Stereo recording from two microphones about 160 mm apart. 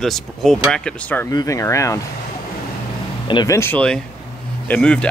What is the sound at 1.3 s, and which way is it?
Speech, 25° left (ahead or behind).